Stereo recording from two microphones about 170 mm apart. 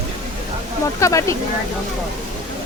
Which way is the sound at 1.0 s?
20° left (ahead or behind).